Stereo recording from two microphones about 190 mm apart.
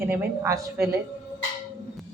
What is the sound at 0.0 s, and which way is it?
Speech, 10° right (ahead or behind).